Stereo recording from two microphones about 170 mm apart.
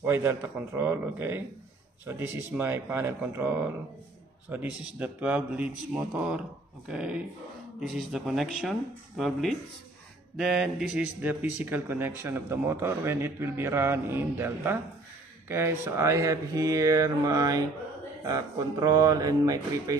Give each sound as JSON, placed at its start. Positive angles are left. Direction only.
{"t": 0.0, "sound": "speech", "side_deg": -15}
{"t": 15.4, "sound": "mantra", "side_deg": -15}